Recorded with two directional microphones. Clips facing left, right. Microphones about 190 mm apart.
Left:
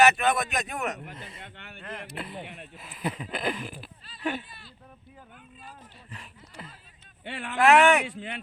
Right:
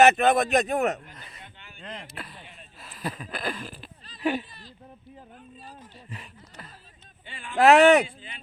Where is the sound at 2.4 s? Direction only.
65° left (ahead or behind).